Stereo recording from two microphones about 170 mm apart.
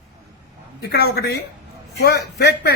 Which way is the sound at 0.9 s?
75° left (ahead or behind).